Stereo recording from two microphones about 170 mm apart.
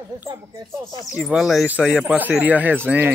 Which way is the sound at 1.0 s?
Centre (ahead or behind).